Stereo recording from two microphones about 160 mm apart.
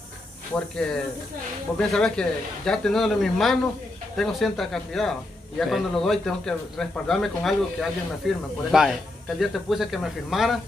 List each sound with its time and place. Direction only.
0.6 s speech: 5° left (ahead or behind)